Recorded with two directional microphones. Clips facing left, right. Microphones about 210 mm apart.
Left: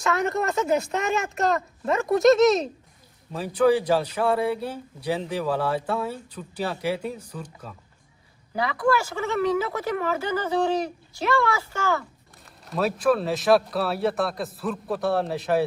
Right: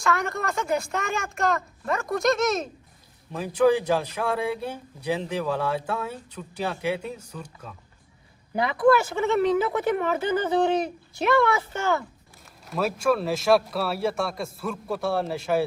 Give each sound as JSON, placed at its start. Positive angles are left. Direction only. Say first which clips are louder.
{"t": 0.1, "sound": "speech", "louder": "left 4 dB", "side_deg": 20}
{"t": 3.3, "sound": "a man's voice", "louder": "even", "side_deg": 0}
{"t": 8.5, "sound": "speech", "louder": "right 3 dB", "side_deg": -25}
{"t": 12.6, "sound": "a man's voice", "louder": "left 2 dB", "side_deg": 0}